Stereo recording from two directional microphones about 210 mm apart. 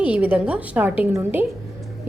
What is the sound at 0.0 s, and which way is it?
A woman's voice, 5° right (ahead or behind).